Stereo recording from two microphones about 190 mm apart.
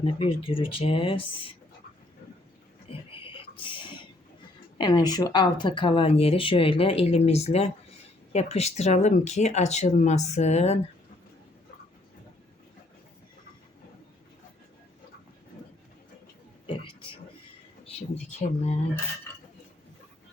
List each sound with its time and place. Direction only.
0.0 s speech: 30° left (ahead or behind)
3.1 s a sound: 25° left (ahead or behind)
4.8 s speech: 20° left (ahead or behind)
18.2 s speech: 35° left (ahead or behind)